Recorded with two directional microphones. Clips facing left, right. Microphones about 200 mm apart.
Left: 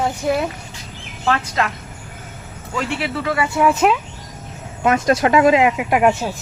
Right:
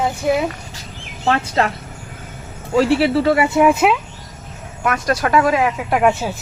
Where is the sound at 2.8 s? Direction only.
35° right (ahead or behind); by 4.0 s 10° right (ahead or behind).